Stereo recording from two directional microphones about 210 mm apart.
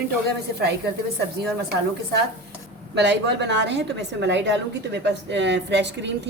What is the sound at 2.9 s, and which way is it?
A woman's voice, 55° right (ahead or behind).